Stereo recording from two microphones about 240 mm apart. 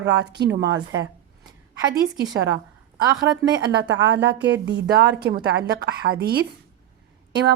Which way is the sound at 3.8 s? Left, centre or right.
Right.